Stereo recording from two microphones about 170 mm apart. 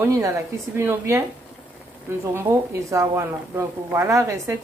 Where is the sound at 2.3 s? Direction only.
15° right (ahead or behind).